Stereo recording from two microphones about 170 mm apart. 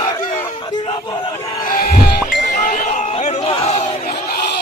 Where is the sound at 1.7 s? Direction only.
60° left (ahead or behind).